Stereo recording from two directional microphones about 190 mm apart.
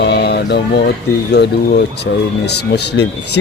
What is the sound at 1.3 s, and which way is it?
Speech, 60° left (ahead or behind).